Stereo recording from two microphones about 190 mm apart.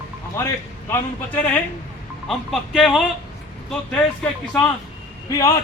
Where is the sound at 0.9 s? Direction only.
10° left (ahead or behind).